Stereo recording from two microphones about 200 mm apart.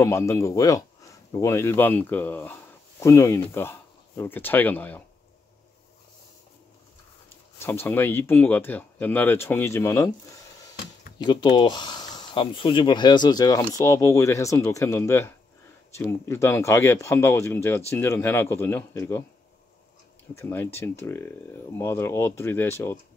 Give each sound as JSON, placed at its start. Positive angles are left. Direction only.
{"t": 0.0, "sound": "speech", "side_deg": 15}
{"t": 7.5, "sound": "speech", "side_deg": 10}
{"t": 11.1, "sound": "speech", "side_deg": 20}
{"t": 20.3, "sound": "speech", "side_deg": 10}